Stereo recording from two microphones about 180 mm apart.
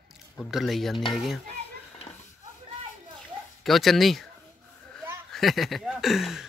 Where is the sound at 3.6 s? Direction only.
Centre (ahead or behind).